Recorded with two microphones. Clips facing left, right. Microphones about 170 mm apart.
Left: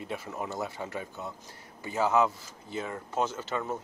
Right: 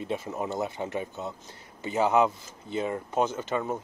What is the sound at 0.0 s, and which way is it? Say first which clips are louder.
Speech: right 5 dB; 20° right (ahead or behind).